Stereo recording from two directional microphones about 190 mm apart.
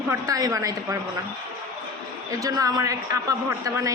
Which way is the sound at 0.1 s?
15° right (ahead or behind).